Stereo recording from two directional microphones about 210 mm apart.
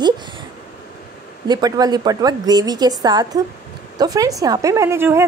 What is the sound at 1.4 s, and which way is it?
A woman's voice, 20° right (ahead or behind).